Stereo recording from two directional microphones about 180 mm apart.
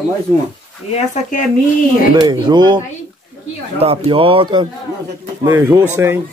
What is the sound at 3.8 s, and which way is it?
Speech, 30° right (ahead or behind).